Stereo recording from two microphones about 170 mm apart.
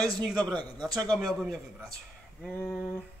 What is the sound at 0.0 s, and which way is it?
A man's voice, 20° right (ahead or behind).